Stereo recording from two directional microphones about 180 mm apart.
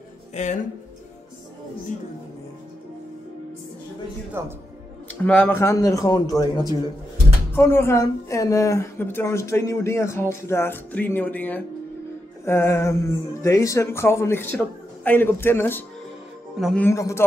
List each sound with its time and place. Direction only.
0.3 s speech: 40° left (ahead or behind)
4.4 s a man's voice: 15° right (ahead or behind)
5.2 s a man's voice: 5° left (ahead or behind)
16.5 s speech: centre (ahead or behind)
16.8 s a woman's voice: 15° left (ahead or behind)